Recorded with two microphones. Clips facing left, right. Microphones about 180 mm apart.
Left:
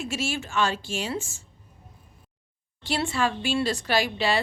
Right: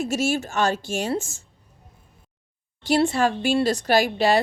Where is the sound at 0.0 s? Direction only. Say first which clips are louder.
Right 7 dB; 45° right (ahead or behind).